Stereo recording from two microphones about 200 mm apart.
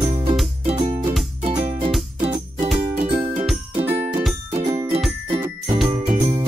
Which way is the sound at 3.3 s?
Centre (ahead or behind).